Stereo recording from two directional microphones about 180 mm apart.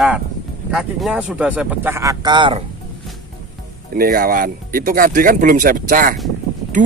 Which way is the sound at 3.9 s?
55° right (ahead or behind).